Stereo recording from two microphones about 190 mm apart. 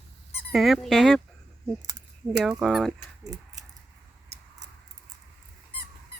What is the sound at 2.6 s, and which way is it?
Speech, centre (ahead or behind).